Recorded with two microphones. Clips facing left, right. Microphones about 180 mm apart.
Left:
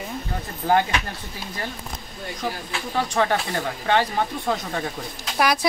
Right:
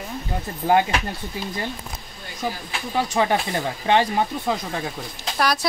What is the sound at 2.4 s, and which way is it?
Speech, 10° right (ahead or behind).